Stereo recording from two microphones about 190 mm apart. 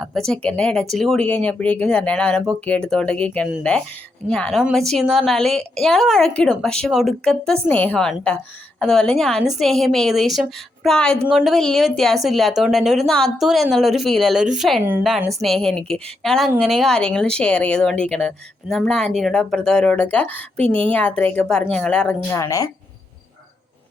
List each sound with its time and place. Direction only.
0.1 s a woman's voice: 5° left (ahead or behind)
22.4 s speech: 15° left (ahead or behind)